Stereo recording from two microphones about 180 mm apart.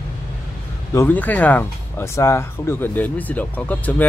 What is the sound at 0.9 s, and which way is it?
Speech, 10° left (ahead or behind).